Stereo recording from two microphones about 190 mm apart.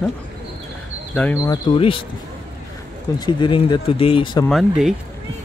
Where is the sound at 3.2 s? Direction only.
25° left (ahead or behind).